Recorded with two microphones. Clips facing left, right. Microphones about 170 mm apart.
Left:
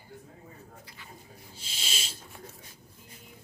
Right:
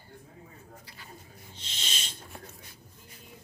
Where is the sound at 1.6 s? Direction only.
10° left (ahead or behind).